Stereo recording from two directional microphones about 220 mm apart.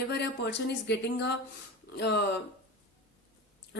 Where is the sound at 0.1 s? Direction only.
50° left (ahead or behind).